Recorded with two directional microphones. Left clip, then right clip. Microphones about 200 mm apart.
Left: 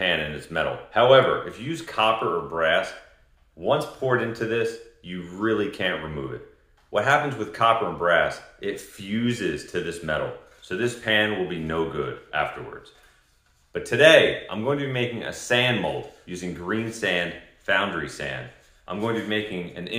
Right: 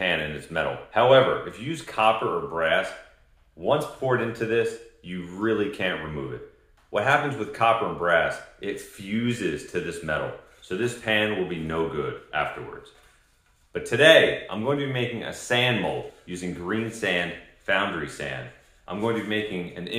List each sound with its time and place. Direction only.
0.0 s speech: 15° left (ahead or behind)
13.7 s speech: 15° left (ahead or behind)